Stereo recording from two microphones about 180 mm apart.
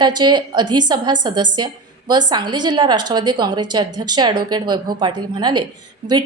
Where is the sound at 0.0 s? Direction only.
25° right (ahead or behind).